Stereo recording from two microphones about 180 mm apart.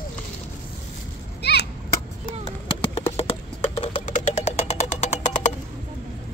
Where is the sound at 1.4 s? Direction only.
65° left (ahead or behind).